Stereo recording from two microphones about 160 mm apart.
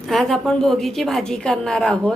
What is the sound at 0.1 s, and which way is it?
A woman's voice, centre (ahead or behind).